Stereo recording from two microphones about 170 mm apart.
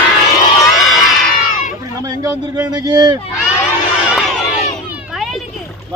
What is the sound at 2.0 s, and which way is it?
A man's voice, 20° right (ahead or behind).